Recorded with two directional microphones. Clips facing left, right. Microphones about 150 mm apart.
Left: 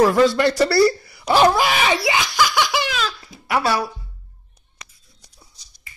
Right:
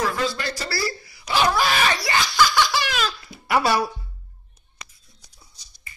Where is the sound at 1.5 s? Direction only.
15° left (ahead or behind).